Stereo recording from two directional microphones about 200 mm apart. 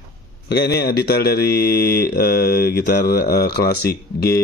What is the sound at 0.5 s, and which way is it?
Speech, 55° left (ahead or behind).